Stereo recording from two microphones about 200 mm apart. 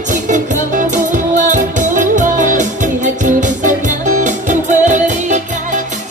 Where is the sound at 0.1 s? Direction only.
40° right (ahead or behind).